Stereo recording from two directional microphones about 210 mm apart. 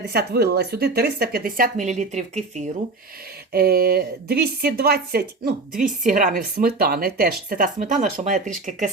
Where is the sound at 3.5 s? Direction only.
50° right (ahead or behind).